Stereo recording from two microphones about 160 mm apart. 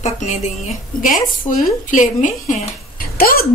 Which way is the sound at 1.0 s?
55° left (ahead or behind).